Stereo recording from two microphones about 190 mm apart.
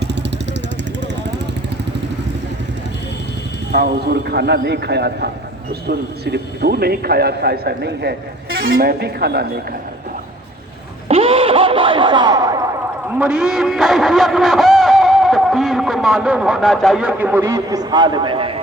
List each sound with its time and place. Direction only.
0.0 s vehicle: 65° right (ahead or behind)
3.7 s a man's voice: 55° right (ahead or behind); by 8.7 s 90° right
8.7 s a man's voice: 55° right (ahead or behind)
11.1 s a sound: 30° right (ahead or behind)
13.1 s a man's voice: 5° right (ahead or behind); by 18.5 s 25° right (ahead or behind)